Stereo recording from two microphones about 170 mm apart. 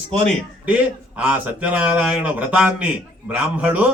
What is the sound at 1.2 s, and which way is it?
Speech, 10° right (ahead or behind).